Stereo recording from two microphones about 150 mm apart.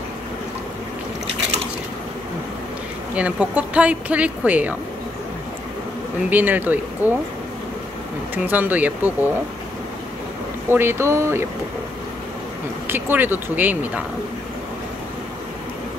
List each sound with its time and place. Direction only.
3.2 s speech: 10° right (ahead or behind)
6.3 s speech: 10° right (ahead or behind)
8.5 s speech: 10° right (ahead or behind)
10.7 s speech: 15° right (ahead or behind)
12.8 s speech: 15° right (ahead or behind)